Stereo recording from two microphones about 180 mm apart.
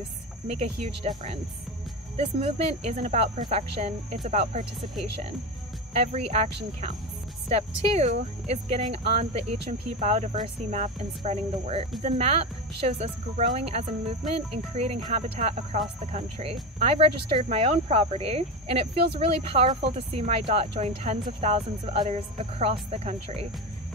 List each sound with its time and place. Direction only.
0.6 s speech: 40° right (ahead or behind)
6.1 s speech: 35° right (ahead or behind)